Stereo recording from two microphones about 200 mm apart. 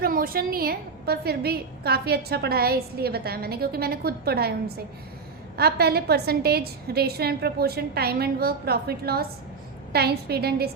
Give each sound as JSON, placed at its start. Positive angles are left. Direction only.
{"t": 0.0, "sound": "a woman's voice", "side_deg": -45}
{"t": 5.5, "sound": "a woman's voice", "side_deg": -50}